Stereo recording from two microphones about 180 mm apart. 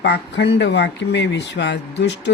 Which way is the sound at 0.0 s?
70° left (ahead or behind).